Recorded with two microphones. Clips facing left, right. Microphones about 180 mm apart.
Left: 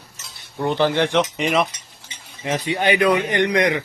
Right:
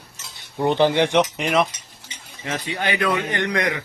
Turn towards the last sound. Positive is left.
turn(degrees=20)  # may be behind; listen again after turning